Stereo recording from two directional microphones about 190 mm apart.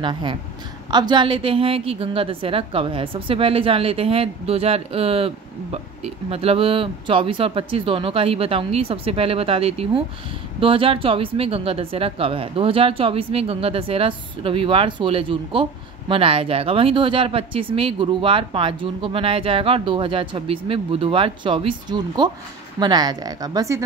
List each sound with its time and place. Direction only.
0.0 s a woman's voice: 25° right (ahead or behind)